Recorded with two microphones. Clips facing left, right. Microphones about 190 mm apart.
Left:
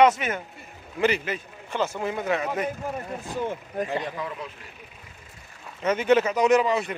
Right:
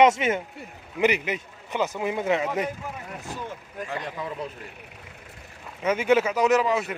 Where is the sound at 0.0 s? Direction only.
25° right (ahead or behind).